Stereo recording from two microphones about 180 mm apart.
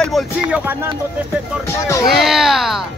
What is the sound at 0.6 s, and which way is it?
Speech, 10° right (ahead or behind).